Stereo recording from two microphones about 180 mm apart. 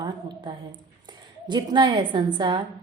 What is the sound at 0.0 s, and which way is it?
A woman's voice, 25° right (ahead or behind).